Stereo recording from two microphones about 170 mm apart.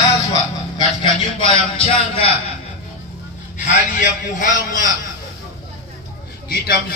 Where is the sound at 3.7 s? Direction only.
50° left (ahead or behind).